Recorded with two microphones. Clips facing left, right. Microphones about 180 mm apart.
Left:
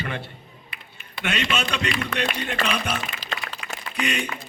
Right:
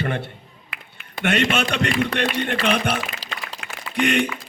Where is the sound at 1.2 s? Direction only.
50° right (ahead or behind).